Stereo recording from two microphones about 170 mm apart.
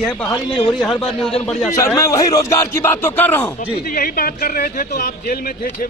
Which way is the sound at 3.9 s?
60° left (ahead or behind).